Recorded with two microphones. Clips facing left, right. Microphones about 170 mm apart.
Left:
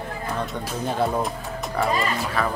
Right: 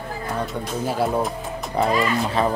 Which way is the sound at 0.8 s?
5° right (ahead or behind).